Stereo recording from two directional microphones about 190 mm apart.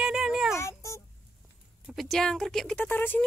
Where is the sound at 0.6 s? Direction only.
15° left (ahead or behind).